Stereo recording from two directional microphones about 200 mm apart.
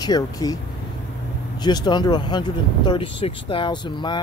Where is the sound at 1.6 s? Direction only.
20° left (ahead or behind).